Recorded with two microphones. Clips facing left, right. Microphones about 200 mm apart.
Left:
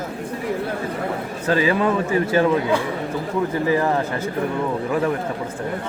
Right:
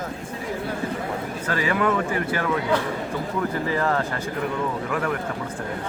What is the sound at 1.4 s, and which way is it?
Speech, 25° left (ahead or behind).